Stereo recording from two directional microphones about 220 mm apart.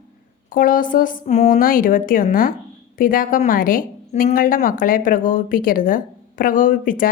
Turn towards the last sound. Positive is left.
turn(degrees=40)  # may be behind; listen again after turning